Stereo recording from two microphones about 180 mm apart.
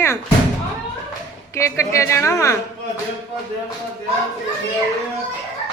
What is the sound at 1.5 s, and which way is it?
Speech, 15° left (ahead or behind).